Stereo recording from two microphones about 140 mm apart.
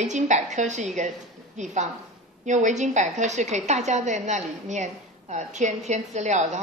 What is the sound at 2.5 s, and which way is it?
A woman's voice, 60° right (ahead or behind).